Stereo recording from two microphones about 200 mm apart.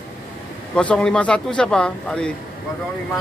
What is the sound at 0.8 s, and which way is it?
Speech, 5° left (ahead or behind).